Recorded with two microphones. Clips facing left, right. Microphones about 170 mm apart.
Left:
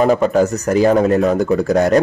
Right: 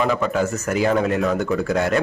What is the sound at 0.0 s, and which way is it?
Speech, 40° left (ahead or behind).